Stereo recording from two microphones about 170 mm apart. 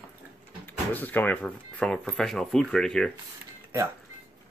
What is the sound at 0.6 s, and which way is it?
Speech, 10° left (ahead or behind).